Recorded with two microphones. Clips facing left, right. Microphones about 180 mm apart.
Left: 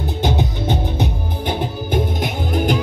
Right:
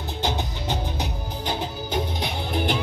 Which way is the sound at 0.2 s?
55° left (ahead or behind).